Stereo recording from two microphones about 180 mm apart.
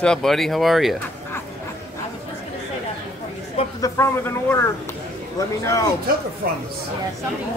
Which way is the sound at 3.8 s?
15° left (ahead or behind).